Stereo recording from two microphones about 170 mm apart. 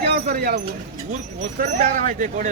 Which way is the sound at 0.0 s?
70° right (ahead or behind).